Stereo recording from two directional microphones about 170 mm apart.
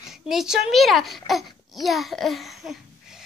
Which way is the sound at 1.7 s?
Centre (ahead or behind).